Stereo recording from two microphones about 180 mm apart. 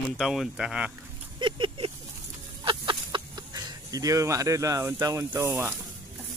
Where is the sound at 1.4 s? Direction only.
25° right (ahead or behind); by 5.8 s 10° right (ahead or behind).